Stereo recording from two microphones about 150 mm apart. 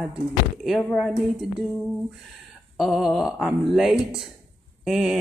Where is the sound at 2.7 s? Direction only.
5° right (ahead or behind).